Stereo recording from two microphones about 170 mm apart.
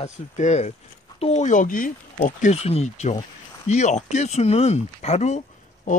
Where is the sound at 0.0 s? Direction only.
40° left (ahead or behind).